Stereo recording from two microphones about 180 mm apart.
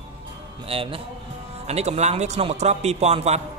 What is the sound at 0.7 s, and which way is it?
A man's voice, 30° right (ahead or behind).